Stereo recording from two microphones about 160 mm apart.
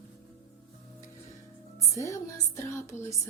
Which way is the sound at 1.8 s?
20° left (ahead or behind).